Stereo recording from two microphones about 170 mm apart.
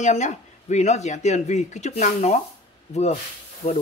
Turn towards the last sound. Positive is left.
turn(degrees=40)  # may be behind; listen again after turning